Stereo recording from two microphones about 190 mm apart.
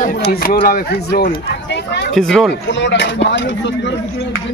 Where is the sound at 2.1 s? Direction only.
Centre (ahead or behind).